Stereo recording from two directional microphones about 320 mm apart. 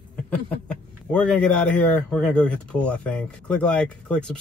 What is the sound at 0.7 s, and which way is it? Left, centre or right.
Speech, centre.